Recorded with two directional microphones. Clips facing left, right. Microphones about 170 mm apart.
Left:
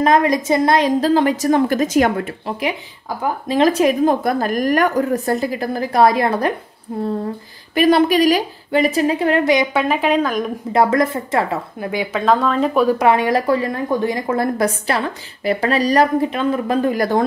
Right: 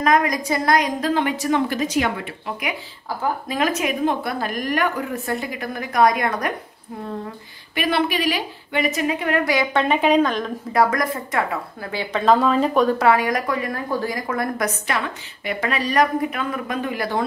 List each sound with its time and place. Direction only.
0.0 s a woman's voice: 30° left (ahead or behind); by 2.5 s 45° left (ahead or behind)
3.4 s a woman's voice: 30° left (ahead or behind)
9.8 s a woman's voice: centre (ahead or behind)
10.7 s a woman's voice: 25° left (ahead or behind)
11.9 s speech: 10° left (ahead or behind)
12.3 s a woman's voice: centre (ahead or behind)
13.0 s a woman's voice: 25° left (ahead or behind); by 17.2 s 40° left (ahead or behind)